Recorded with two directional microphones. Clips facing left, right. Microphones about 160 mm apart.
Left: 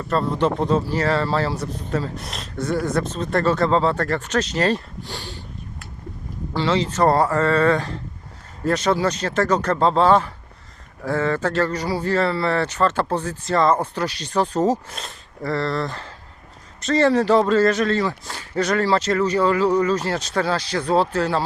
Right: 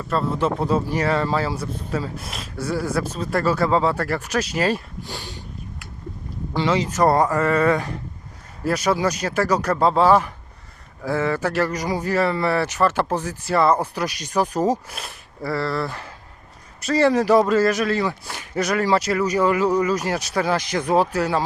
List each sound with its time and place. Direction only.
0.1 s speech: 5° right (ahead or behind)
6.5 s speech: 15° right (ahead or behind)